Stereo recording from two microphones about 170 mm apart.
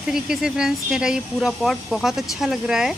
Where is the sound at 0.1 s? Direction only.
5° right (ahead or behind).